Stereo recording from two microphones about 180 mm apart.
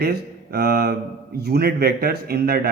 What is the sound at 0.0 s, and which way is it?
Speech, 60° right (ahead or behind).